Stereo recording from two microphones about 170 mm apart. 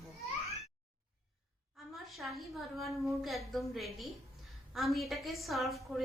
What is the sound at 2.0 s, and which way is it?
A woman's voice, centre (ahead or behind).